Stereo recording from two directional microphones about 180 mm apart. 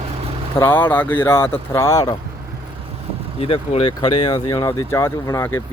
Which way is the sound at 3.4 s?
35° left (ahead or behind).